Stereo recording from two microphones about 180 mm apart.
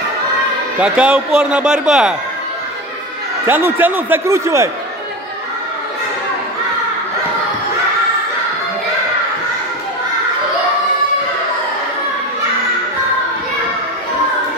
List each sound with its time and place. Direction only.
0.7 s speech: 5° right (ahead or behind)
3.4 s a man's voice: 10° right (ahead or behind)